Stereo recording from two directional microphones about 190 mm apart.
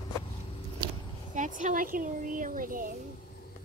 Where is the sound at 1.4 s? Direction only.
40° right (ahead or behind).